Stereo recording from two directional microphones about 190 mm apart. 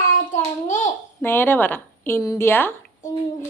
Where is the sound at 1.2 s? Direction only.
10° left (ahead or behind).